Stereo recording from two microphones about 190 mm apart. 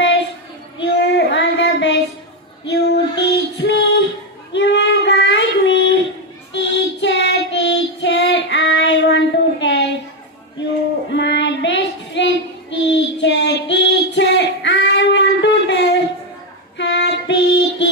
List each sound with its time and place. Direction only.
0.7 s child singing: 65° left (ahead or behind)
2.6 s female singing: 65° left (ahead or behind)
4.6 s child singing: 65° left (ahead or behind)
11.1 s child singing: 65° left (ahead or behind)
16.7 s female singing: 70° left (ahead or behind)